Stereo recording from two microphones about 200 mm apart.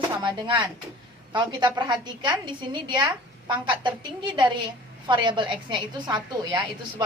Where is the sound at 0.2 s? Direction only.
25° right (ahead or behind).